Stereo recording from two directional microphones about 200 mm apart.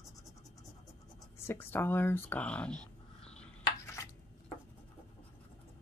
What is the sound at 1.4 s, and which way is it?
Speech, 10° left (ahead or behind).